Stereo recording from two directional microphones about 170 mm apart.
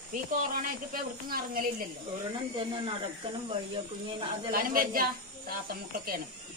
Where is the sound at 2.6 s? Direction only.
30° right (ahead or behind).